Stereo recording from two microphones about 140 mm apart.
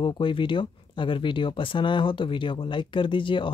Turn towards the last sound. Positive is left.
turn(degrees=35)  # may be behind; listen again after turning